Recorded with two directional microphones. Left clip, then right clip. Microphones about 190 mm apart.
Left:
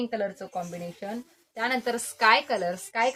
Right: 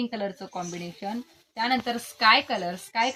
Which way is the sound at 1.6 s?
20° left (ahead or behind).